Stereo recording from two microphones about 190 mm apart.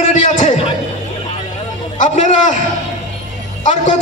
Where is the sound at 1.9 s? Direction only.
40° left (ahead or behind).